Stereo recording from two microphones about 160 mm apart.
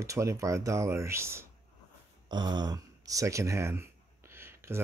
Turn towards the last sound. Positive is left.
turn(degrees=-15)  # may be behind; listen again after turning